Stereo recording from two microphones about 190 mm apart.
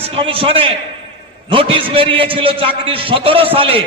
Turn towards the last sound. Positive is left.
turn(degrees=-30)  # may be behind; listen again after turning